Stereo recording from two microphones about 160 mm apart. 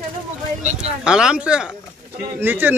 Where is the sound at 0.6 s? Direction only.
45° right (ahead or behind).